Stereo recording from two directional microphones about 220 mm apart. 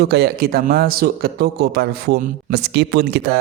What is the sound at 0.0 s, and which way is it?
A man's voice, 50° right (ahead or behind).